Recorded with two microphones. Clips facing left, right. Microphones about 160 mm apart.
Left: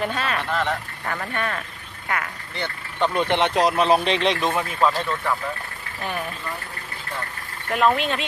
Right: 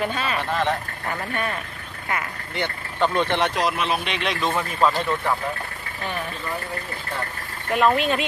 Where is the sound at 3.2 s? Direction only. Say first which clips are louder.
Left 3 dB; 20° left (ahead or behind).